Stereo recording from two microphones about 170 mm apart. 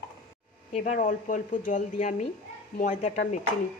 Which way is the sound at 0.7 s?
45° left (ahead or behind).